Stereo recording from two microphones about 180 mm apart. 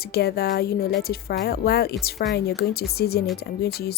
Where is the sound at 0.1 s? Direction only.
60° left (ahead or behind).